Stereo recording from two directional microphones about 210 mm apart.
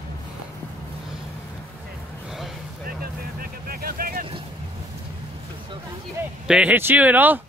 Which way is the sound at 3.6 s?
45° right (ahead or behind).